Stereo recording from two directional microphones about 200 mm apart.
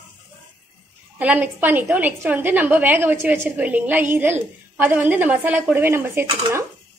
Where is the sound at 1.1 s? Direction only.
10° right (ahead or behind).